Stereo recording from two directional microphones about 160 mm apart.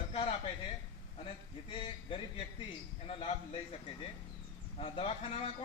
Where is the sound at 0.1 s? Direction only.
35° left (ahead or behind).